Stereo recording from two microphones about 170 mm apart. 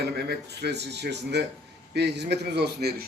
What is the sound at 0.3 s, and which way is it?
A man's voice, 75° right (ahead or behind).